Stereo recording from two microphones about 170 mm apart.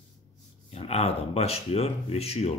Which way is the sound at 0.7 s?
40° left (ahead or behind).